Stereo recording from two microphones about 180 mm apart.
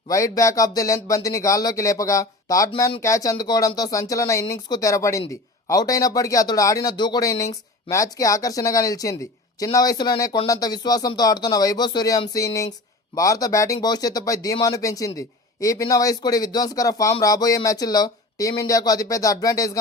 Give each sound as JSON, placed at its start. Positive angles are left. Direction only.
{"t": 0.1, "sound": "speech", "side_deg": 20}